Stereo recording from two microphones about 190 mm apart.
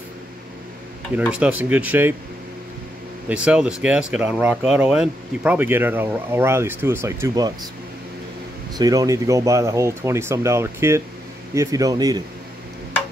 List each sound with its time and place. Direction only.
1.1 s speech: 5° right (ahead or behind)
3.3 s speech: 5° right (ahead or behind)
8.7 s speech: 20° right (ahead or behind)